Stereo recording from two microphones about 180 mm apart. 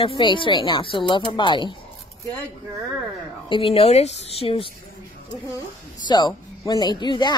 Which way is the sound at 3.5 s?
30° left (ahead or behind).